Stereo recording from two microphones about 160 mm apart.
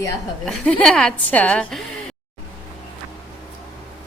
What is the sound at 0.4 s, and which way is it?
A woman's voice, 5° left (ahead or behind).